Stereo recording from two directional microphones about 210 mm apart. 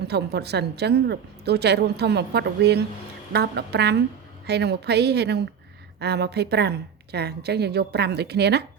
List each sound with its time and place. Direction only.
0.1 s a woman's voice: 50° right (ahead or behind)